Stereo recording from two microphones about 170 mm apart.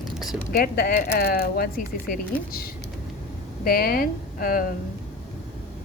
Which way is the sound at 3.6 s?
60° left (ahead or behind).